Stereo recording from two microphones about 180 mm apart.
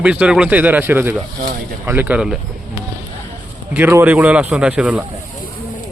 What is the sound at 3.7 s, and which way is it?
Speech, 10° right (ahead or behind).